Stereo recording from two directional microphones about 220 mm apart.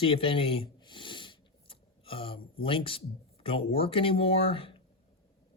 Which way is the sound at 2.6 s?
25° left (ahead or behind).